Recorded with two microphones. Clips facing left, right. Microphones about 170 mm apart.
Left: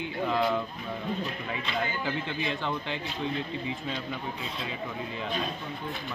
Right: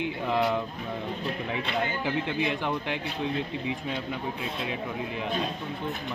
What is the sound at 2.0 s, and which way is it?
Speech, 15° right (ahead or behind).